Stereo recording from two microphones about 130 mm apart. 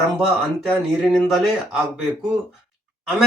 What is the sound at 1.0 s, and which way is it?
Speech, 10° left (ahead or behind).